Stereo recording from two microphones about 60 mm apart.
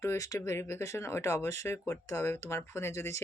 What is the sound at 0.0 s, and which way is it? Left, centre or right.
Speech, left.